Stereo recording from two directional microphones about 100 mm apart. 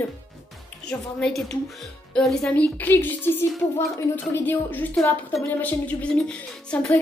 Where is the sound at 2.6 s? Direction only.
15° left (ahead or behind).